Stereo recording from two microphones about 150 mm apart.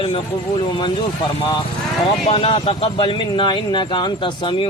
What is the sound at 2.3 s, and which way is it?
A man's voice, 40° left (ahead or behind).